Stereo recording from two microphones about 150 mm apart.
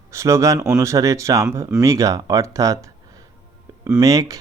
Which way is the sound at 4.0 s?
25° right (ahead or behind).